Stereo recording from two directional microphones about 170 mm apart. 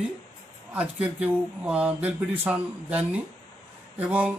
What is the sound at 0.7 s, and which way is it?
Speech, 10° right (ahead or behind).